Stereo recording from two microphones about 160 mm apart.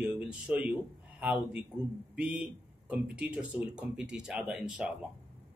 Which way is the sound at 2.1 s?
5° right (ahead or behind).